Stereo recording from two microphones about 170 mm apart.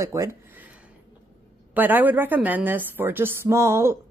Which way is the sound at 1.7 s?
10° right (ahead or behind).